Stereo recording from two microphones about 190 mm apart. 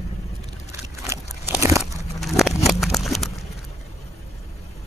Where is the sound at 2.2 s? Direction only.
Centre (ahead or behind).